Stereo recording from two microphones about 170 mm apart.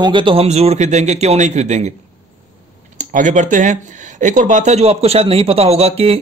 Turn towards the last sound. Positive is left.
turn(degrees=-35)  # may be behind; listen again after turning